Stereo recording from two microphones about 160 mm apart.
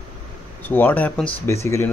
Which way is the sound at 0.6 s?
10° left (ahead or behind).